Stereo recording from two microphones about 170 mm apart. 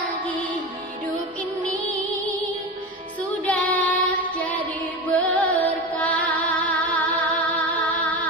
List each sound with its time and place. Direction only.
1.9 s music: 10° left (ahead or behind)
3.4 s child singing: 10° left (ahead or behind)
5.9 s music: 10° left (ahead or behind)